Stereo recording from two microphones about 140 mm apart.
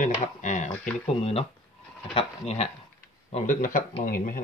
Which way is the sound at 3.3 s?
60° left (ahead or behind).